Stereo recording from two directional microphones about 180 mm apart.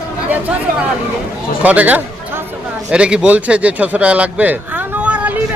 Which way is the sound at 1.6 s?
10° right (ahead or behind).